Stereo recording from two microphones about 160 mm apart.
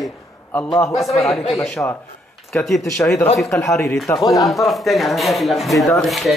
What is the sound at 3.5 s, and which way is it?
Speech, 15° left (ahead or behind).